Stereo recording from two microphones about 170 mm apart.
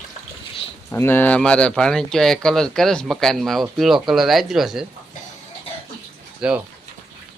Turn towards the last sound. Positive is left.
turn(degrees=-5)  # may be behind; listen again after turning